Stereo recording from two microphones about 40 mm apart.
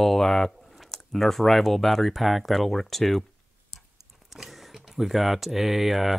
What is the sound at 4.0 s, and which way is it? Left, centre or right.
Vehicle, centre.